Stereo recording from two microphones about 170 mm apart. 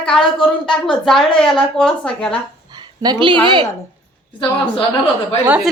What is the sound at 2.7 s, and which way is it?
Speech, 25° right (ahead or behind).